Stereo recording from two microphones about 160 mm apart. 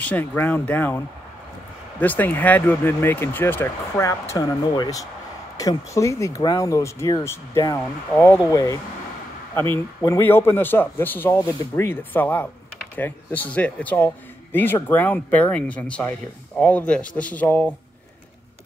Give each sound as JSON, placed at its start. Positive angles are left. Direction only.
{"t": 0.0, "sound": "a man's voice", "side_deg": 10}